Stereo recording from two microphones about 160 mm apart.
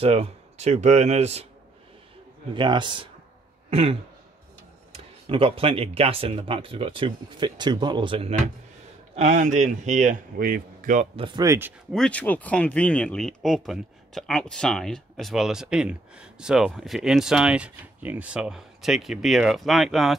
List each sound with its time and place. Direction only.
0.0 s speech: 40° right (ahead or behind)
2.5 s a man's voice: 30° right (ahead or behind)
4.9 s speech: 35° right (ahead or behind)
9.1 s speech: 45° right (ahead or behind)
11.1 s a man's voice: 30° right (ahead or behind)
11.9 s speech: 5° left (ahead or behind)